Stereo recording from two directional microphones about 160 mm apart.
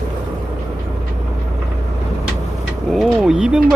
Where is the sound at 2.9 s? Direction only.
Centre (ahead or behind).